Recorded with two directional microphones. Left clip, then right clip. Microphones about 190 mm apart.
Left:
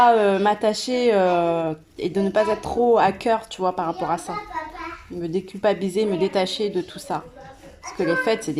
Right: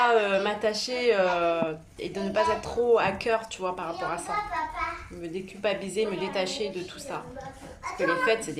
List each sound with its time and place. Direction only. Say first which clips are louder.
0.0 s speech: left 7 dB; 35° left (ahead or behind)
5.3 s speech: left 7 dB; 35° left (ahead or behind)